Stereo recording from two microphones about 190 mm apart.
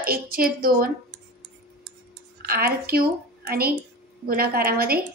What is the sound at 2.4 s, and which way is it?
A woman's voice, 55° right (ahead or behind).